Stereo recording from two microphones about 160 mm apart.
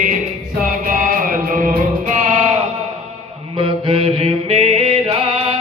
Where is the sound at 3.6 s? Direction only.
35° right (ahead or behind).